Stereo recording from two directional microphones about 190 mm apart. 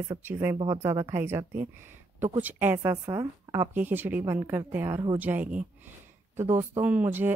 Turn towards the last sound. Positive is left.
turn(degrees=-10)  # may be behind; listen again after turning